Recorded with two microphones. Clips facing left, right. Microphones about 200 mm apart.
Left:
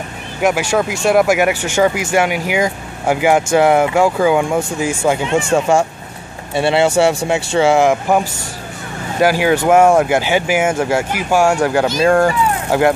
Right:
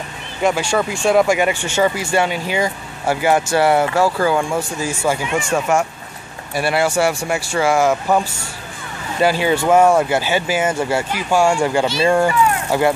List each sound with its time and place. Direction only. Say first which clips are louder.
0.4 s speech: left 2 dB; 10° left (ahead or behind)
12.0 s speech: left 3 dB; 5° right (ahead or behind)
12.7 s speech: left 4 dB; 15° left (ahead or behind)